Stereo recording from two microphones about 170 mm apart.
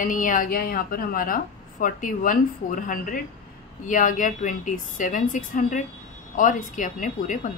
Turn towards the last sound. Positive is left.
turn(degrees=50)  # may be behind; listen again after turning